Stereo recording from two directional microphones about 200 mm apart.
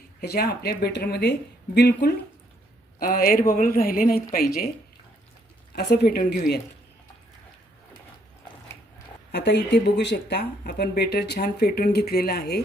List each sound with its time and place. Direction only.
0.2 s speech: 50° left (ahead or behind)
5.7 s speech: 55° left (ahead or behind)
9.3 s speech: 55° left (ahead or behind)